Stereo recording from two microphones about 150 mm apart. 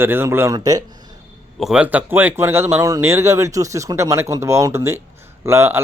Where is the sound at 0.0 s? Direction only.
15° right (ahead or behind).